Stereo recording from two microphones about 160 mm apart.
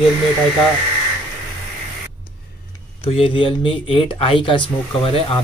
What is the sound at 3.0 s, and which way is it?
Speech, 35° left (ahead or behind).